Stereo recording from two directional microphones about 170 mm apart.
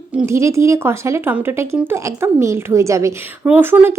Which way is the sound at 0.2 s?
15° right (ahead or behind).